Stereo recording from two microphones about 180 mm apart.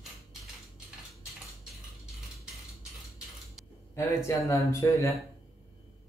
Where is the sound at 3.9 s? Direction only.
15° left (ahead or behind).